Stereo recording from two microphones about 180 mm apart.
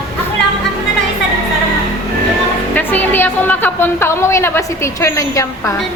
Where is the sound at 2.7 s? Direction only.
10° left (ahead or behind).